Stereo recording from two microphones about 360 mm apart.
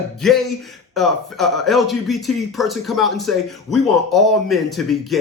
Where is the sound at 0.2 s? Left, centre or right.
Centre.